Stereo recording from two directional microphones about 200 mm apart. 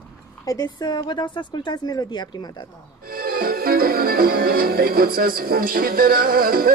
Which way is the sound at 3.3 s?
50° right (ahead or behind).